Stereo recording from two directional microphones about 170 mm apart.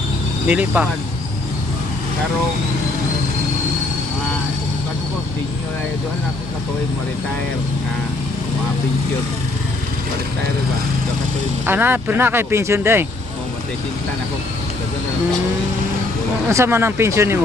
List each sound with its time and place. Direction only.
0.4 s speech: 10° right (ahead or behind)
11.6 s speech: 10° right (ahead or behind)
16.5 s speech: 15° right (ahead or behind)